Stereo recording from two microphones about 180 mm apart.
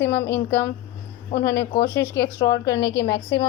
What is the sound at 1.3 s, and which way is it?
Speech, 45° left (ahead or behind).